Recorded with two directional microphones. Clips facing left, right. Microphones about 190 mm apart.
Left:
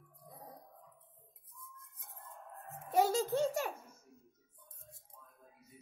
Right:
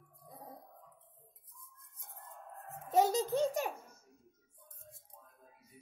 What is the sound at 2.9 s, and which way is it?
Speech, 20° right (ahead or behind).